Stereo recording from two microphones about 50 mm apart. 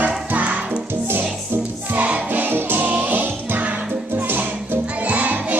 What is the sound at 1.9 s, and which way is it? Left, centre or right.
Music, right.